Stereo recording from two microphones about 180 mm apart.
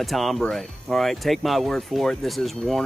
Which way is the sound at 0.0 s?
Centre (ahead or behind).